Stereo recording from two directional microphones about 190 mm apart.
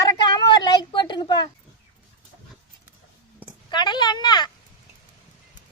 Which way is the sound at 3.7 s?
25° left (ahead or behind).